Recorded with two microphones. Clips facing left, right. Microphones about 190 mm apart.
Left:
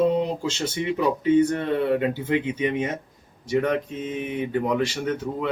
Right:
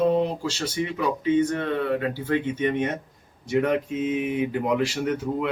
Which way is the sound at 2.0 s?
20° left (ahead or behind).